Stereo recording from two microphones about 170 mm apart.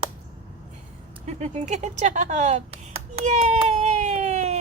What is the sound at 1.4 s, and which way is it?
Speech, 45° right (ahead or behind).